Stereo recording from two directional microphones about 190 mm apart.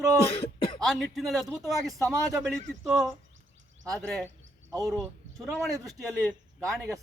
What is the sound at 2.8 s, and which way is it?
Speech, centre (ahead or behind).